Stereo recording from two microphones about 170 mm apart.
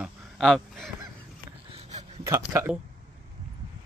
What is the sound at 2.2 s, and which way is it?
Speech, 15° right (ahead or behind).